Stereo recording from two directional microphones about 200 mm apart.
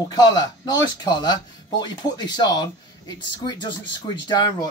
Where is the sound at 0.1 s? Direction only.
20° left (ahead or behind).